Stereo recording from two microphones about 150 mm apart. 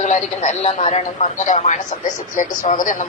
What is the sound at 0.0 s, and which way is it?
A man's voice, 50° left (ahead or behind).